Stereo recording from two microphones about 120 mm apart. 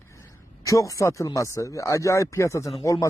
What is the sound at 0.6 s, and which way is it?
Speech, 30° left (ahead or behind).